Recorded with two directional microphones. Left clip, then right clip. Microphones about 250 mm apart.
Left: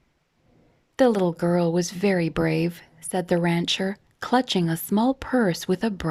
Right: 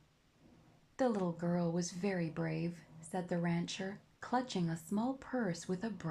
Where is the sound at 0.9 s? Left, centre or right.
Left.